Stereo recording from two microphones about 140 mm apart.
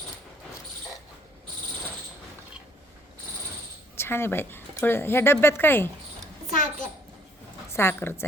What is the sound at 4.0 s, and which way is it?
Speech, 15° left (ahead or behind).